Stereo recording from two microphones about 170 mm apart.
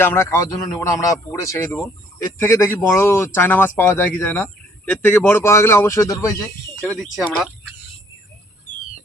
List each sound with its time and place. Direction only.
0.0 s a man's voice: 15° left (ahead or behind)
6.8 s speech: 5° left (ahead or behind)
8.7 s bird: 10° left (ahead or behind)